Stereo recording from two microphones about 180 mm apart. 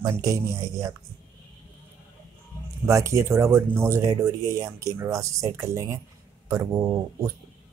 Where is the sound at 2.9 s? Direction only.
15° right (ahead or behind).